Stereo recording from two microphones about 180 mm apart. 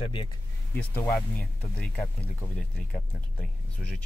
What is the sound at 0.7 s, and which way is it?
Speech, 10° left (ahead or behind).